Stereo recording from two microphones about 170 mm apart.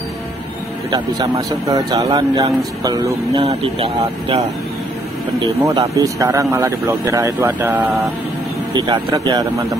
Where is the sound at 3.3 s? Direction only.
35° right (ahead or behind).